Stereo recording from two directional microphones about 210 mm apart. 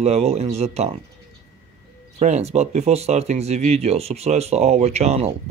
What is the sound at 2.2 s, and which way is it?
Speech, 30° right (ahead or behind).